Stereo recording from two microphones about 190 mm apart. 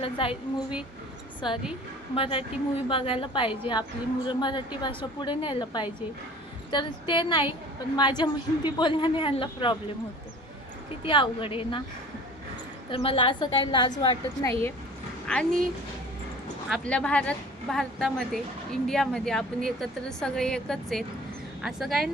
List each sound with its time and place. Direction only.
0.0 s a woman's voice: 30° left (ahead or behind)
2.1 s a woman's voice: 30° left (ahead or behind)
11.0 s a woman's voice: 25° left (ahead or behind)
12.9 s a woman's voice: 30° left (ahead or behind)
15.3 s a woman's voice: 5° left (ahead or behind)
16.6 s a woman's voice: 5° left (ahead or behind)